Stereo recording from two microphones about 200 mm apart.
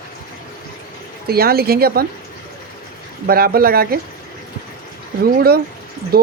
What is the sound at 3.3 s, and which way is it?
Speech, 50° right (ahead or behind).